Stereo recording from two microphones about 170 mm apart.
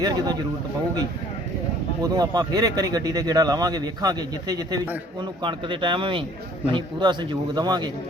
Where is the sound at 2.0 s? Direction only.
20° right (ahead or behind).